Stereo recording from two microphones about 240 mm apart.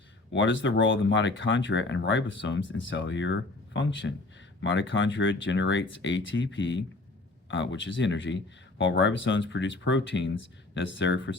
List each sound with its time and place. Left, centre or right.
0.3 s speech: left